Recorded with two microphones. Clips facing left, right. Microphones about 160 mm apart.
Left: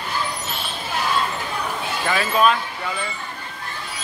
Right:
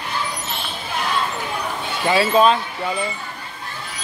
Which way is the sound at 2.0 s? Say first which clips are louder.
Right 4 dB; 25° right (ahead or behind).